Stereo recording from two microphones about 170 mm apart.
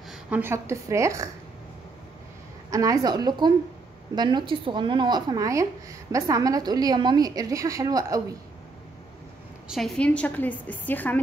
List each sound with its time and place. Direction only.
0.1 s a woman's voice: 10° right (ahead or behind)
2.7 s speech: 20° right (ahead or behind)
9.7 s a woman's voice: centre (ahead or behind)